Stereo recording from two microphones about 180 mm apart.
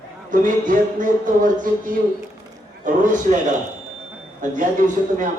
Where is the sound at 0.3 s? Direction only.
45° right (ahead or behind).